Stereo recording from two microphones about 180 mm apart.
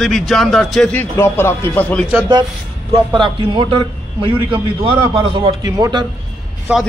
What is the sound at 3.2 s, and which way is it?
A man's voice, 30° right (ahead or behind).